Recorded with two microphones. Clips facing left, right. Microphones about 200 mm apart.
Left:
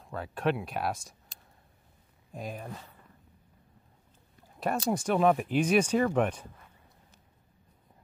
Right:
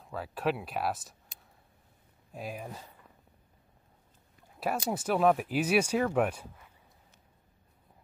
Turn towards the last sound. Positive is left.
turn(degrees=-5)  # may be behind; listen again after turning